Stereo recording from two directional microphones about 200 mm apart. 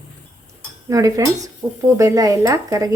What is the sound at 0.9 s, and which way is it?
Speech, 15° right (ahead or behind).